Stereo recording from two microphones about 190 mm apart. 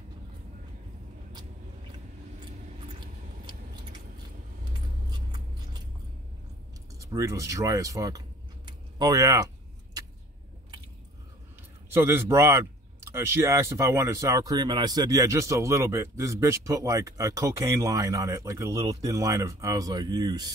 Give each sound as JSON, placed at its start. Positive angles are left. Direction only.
{"t": 2.9, "sound": "a sound", "side_deg": -25}
{"t": 7.0, "sound": "speech", "side_deg": -15}
{"t": 11.9, "sound": "speech", "side_deg": -10}